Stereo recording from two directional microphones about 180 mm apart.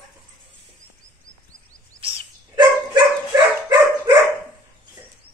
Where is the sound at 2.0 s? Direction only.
30° right (ahead or behind).